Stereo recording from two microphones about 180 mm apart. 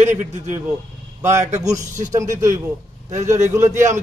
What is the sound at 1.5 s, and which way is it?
A man's voice, 15° right (ahead or behind).